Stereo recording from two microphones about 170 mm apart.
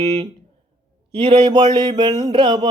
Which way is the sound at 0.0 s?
25° right (ahead or behind).